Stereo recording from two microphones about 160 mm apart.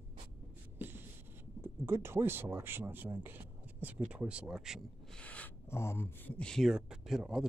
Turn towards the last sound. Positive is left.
turn(degrees=-5)  # may be behind; listen again after turning